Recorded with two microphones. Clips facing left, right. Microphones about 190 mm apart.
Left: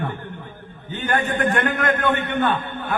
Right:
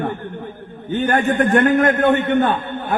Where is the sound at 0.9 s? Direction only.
45° right (ahead or behind).